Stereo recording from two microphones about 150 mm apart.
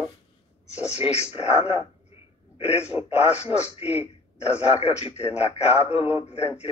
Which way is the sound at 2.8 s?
10° right (ahead or behind).